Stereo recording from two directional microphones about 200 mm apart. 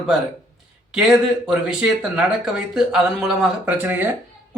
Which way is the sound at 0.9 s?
5° right (ahead or behind).